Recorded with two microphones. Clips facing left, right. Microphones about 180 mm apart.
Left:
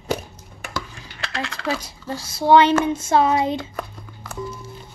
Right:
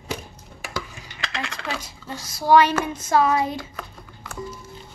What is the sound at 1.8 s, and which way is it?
Speech, 30° left (ahead or behind).